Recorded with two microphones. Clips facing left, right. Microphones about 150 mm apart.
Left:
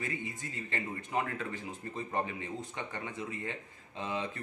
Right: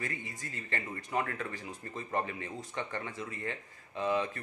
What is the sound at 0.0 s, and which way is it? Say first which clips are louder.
Speech: left 2 dB; 20° left (ahead or behind).